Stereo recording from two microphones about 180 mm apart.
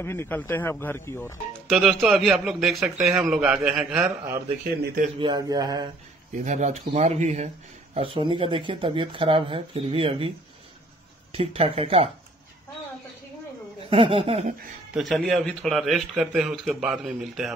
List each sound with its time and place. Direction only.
0.0 s speech: 10° left (ahead or behind)
1.7 s a man's voice: centre (ahead or behind)
5.2 s speech: 25° right (ahead or behind)
6.3 s speech: 40° right (ahead or behind)
11.3 s speech: 35° right (ahead or behind)
13.8 s speech: 30° right (ahead or behind)
15.0 s a man's voice: centre (ahead or behind)